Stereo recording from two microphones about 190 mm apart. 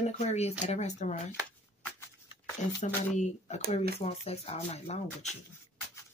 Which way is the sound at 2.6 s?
40° left (ahead or behind).